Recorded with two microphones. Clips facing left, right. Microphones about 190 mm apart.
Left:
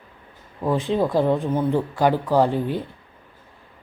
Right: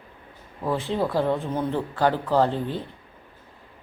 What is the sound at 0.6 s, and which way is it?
Speech, 15° left (ahead or behind).